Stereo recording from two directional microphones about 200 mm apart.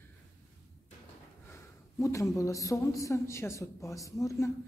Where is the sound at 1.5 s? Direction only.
15° left (ahead or behind).